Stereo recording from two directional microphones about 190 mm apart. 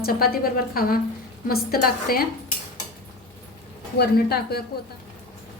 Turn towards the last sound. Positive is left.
turn(degrees=55)  # may be behind; listen again after turning